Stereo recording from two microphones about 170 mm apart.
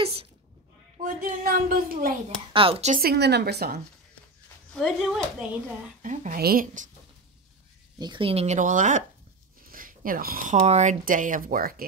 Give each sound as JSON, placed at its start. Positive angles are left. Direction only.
{"t": 0.0, "sound": "a sound", "side_deg": -35}
{"t": 1.0, "sound": "speech", "side_deg": -55}
{"t": 2.5, "sound": "speech", "side_deg": -35}
{"t": 3.0, "sound": "speech", "side_deg": -70}
{"t": 4.7, "sound": "speech", "side_deg": 0}
{"t": 6.0, "sound": "speech", "side_deg": -55}
{"t": 8.0, "sound": "speech", "side_deg": -30}